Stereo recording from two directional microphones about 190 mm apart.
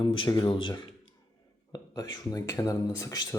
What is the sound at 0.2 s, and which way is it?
Speech, 25° left (ahead or behind).